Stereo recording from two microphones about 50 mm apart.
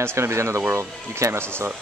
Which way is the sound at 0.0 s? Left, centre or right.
Right.